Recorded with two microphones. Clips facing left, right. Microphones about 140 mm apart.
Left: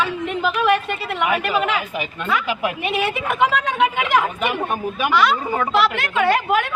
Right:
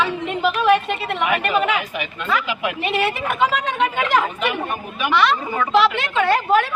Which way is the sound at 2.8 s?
5° left (ahead or behind).